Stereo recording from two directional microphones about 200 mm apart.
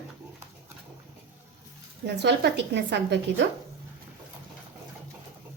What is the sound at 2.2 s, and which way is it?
A woman's voice, 60° right (ahead or behind).